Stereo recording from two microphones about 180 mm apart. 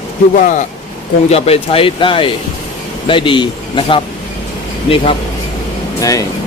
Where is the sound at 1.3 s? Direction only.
35° left (ahead or behind).